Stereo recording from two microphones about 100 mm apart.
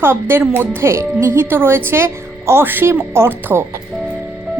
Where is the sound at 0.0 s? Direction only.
25° right (ahead or behind).